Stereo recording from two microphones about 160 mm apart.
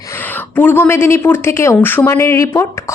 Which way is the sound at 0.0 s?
15° left (ahead or behind).